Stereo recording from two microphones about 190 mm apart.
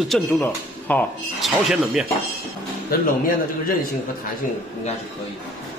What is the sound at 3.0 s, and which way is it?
Speech, 45° left (ahead or behind).